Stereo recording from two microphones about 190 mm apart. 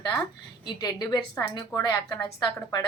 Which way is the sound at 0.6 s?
20° left (ahead or behind).